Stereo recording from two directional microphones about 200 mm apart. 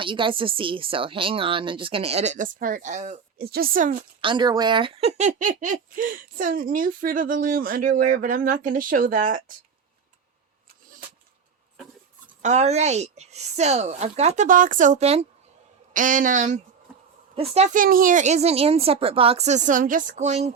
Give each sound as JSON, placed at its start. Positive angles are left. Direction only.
{"t": 0.0, "sound": "speech", "side_deg": -25}
{"t": 4.2, "sound": "speech", "side_deg": -25}
{"t": 12.4, "sound": "a woman's voice", "side_deg": -35}